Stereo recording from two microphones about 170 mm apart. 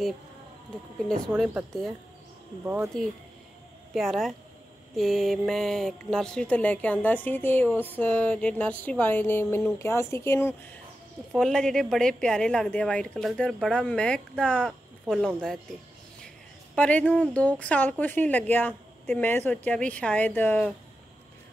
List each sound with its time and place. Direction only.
1.4 s speech: 5° right (ahead or behind)
3.9 s speech: centre (ahead or behind)
11.3 s speech: 5° left (ahead or behind)
16.7 s speech: 10° left (ahead or behind)